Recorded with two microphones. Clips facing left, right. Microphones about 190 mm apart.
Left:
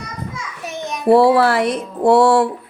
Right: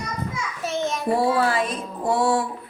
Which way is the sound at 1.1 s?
75° left (ahead or behind).